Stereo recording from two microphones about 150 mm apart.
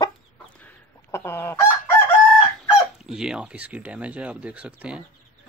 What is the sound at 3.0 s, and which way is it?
Speech, 5° right (ahead or behind).